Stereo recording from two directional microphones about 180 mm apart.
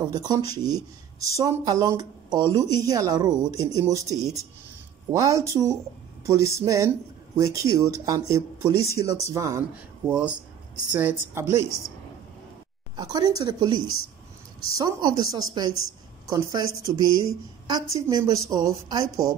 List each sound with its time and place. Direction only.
0.0 s speech: 20° right (ahead or behind)
12.9 s speech: 20° right (ahead or behind)